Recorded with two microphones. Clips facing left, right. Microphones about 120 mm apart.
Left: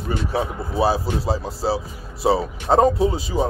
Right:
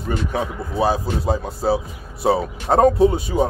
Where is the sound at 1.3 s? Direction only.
30° left (ahead or behind).